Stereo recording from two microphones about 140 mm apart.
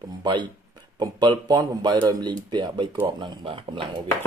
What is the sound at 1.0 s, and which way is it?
Speech, 30° right (ahead or behind).